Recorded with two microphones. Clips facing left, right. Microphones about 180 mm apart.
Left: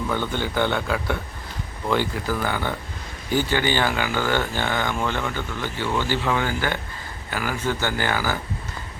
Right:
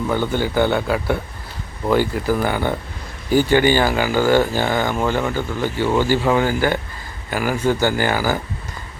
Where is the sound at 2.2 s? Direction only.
15° right (ahead or behind).